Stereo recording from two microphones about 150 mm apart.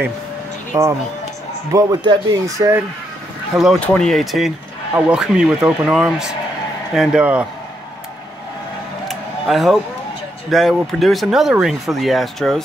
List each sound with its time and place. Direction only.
0.7 s speech: 20° right (ahead or behind)
3.8 s speech: 5° left (ahead or behind)
9.0 s a sound: centre (ahead or behind)
10.5 s speech: centre (ahead or behind)